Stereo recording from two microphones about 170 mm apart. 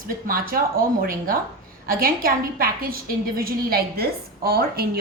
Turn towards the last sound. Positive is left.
turn(degrees=-65)  # may be behind; listen again after turning